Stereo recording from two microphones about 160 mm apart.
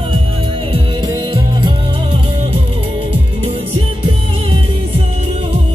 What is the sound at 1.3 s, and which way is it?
Music, 30° right (ahead or behind).